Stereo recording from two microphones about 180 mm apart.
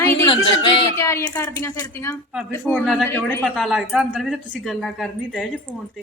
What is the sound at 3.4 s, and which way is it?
A woman's voice, centre (ahead or behind).